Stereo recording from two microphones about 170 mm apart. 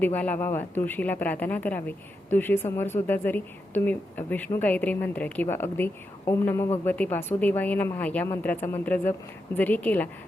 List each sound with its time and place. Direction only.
0.0 s a woman's voice: 10° left (ahead or behind)